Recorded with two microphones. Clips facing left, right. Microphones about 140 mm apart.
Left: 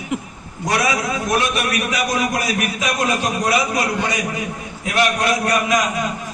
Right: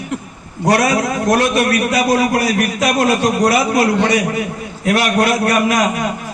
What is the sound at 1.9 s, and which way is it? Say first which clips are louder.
A man's voice: right 6 dB; 75° right (ahead or behind).